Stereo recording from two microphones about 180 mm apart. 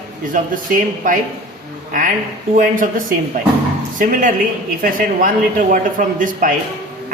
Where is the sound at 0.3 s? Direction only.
50° right (ahead or behind).